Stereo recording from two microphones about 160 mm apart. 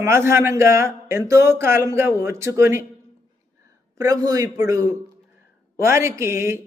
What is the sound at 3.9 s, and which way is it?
A man's voice, 20° right (ahead or behind).